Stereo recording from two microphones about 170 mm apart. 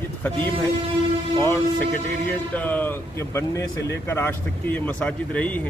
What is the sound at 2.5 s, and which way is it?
Speech, 10° left (ahead or behind).